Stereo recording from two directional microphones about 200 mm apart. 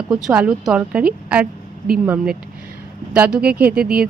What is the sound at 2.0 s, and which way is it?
A woman's voice, 5° right (ahead or behind).